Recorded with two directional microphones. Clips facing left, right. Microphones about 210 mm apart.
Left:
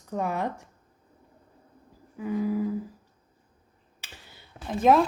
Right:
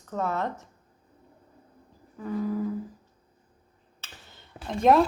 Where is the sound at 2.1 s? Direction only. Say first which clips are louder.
Left 2 dB; 10° left (ahead or behind).